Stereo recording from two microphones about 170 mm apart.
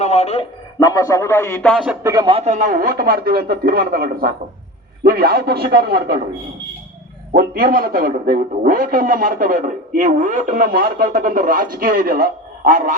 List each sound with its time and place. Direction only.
0.0 s a man's voice: 40° left (ahead or behind)
0.8 s speech: 20° left (ahead or behind)
1.6 s speech: centre (ahead or behind)
2.0 s speech: 20° right (ahead or behind)
2.3 s a man's voice: 40° right (ahead or behind); by 6.2 s 65° right (ahead or behind)
7.3 s a man's voice: 60° right (ahead or behind)